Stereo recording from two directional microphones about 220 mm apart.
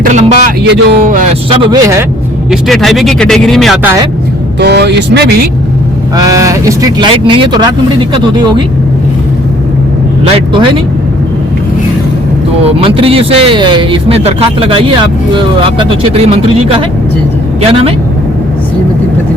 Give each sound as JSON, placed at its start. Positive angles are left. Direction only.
{"t": 0.0, "sound": "a sound", "side_deg": -35}
{"t": 0.4, "sound": "speech", "side_deg": -50}
{"t": 1.5, "sound": "speech", "side_deg": -25}
{"t": 2.5, "sound": "speech", "side_deg": 0}
{"t": 4.6, "sound": "speech", "side_deg": -50}
{"t": 6.1, "sound": "speech", "side_deg": -15}
{"t": 10.3, "sound": "speech", "side_deg": -25}
{"t": 12.8, "sound": "speech", "side_deg": -25}